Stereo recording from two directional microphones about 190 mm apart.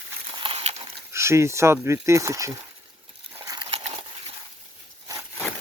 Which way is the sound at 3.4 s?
20° right (ahead or behind).